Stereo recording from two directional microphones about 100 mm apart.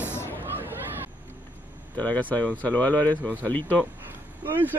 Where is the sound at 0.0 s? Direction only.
25° left (ahead or behind).